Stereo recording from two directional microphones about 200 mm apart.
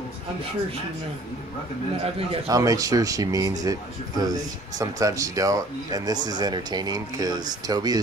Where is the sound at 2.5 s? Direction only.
15° right (ahead or behind).